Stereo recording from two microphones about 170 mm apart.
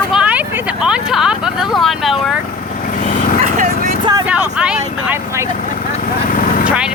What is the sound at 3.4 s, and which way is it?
Vehicle, 50° right (ahead or behind).